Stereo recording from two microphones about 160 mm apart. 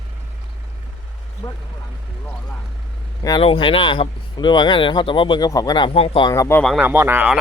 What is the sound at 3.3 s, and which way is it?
Speech, 35° left (ahead or behind).